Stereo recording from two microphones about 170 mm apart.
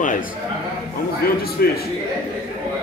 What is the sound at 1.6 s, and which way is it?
Speech, 65° left (ahead or behind).